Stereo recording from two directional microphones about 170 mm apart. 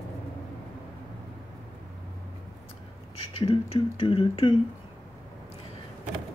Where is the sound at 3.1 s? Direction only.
35° left (ahead or behind).